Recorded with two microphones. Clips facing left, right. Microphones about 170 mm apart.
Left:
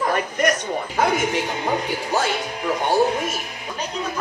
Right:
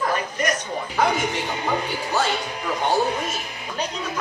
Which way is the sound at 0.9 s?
50° left (ahead or behind).